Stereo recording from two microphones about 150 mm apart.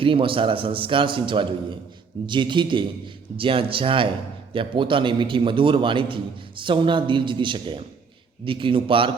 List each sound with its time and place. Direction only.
0.0 s a man's voice: 35° right (ahead or behind)